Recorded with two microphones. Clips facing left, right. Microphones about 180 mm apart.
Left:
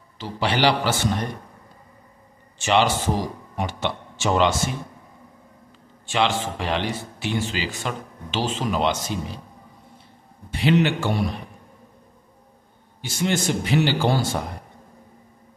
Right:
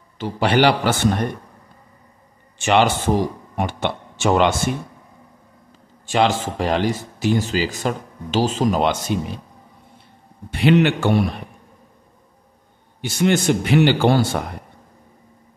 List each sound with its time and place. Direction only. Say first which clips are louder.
0.2 s a man's voice: right 5 dB; 50° right (ahead or behind)
2.6 s a man's voice: right 3 dB; 55° right (ahead or behind)
6.0 s a man's voice: right 4 dB; 40° right (ahead or behind)
10.5 s a man's voice: right 4 dB; 60° right (ahead or behind)
13.0 s a man's voice: right 6 dB; 60° right (ahead or behind)